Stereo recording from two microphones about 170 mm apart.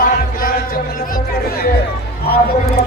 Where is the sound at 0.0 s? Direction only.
55° left (ahead or behind).